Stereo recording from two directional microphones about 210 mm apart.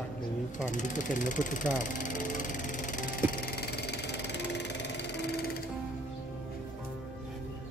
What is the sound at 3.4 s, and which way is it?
Music, 50° left (ahead or behind).